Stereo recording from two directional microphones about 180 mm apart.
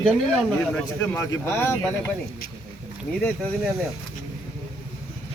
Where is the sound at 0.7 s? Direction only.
10° left (ahead or behind).